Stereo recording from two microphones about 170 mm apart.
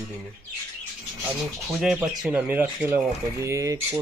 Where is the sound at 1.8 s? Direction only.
5° right (ahead or behind); by 3.8 s 20° right (ahead or behind).